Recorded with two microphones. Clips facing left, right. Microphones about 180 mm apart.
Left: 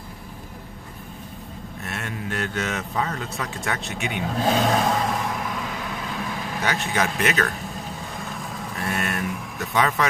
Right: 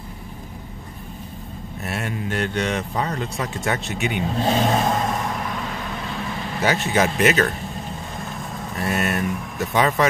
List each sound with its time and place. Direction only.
1.9 s mantra: 10° right (ahead or behind)
3.0 s speech: 20° right (ahead or behind)
3.8 s vehicle: centre (ahead or behind)
6.6 s a man's voice: 5° right (ahead or behind)
8.2 s vehicle: centre (ahead or behind)
9.8 s speech: 20° right (ahead or behind)